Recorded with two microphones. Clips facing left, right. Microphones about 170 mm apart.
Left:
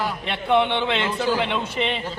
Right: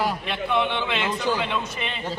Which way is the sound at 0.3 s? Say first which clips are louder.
Left 4 dB; 25° left (ahead or behind).